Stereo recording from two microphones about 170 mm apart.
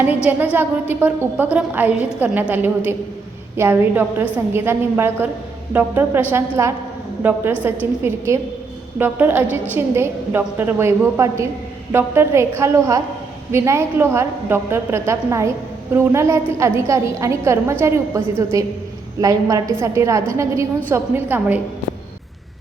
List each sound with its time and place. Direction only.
0.3 s a woman's voice: 10° right (ahead or behind)